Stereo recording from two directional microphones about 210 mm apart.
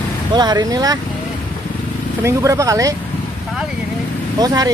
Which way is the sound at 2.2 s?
15° right (ahead or behind).